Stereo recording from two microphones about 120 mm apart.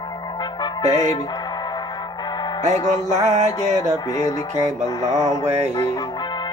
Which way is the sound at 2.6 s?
90° right.